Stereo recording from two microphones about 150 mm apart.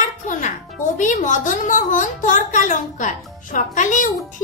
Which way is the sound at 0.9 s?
55° left (ahead or behind).